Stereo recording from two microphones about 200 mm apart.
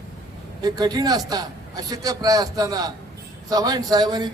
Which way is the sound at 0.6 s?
20° right (ahead or behind).